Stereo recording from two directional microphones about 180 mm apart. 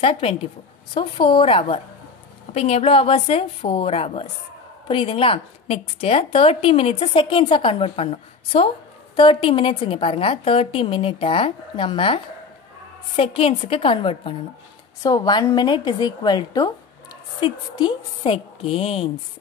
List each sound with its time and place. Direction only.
0.0 s a woman's voice: 30° left (ahead or behind)